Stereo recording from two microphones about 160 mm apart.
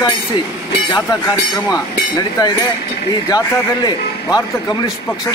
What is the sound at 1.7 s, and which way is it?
Speech, 25° left (ahead or behind).